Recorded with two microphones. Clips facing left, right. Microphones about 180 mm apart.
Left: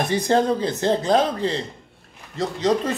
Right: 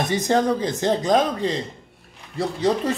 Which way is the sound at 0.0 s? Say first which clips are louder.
Left 1 dB; 20° right (ahead or behind).